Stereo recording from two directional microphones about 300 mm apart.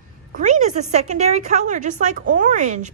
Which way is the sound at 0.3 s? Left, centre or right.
Right.